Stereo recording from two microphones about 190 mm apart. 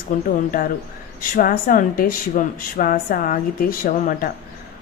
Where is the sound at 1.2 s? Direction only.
50° left (ahead or behind).